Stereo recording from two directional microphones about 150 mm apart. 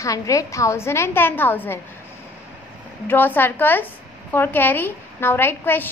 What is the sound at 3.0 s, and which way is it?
A woman's voice, 10° left (ahead or behind).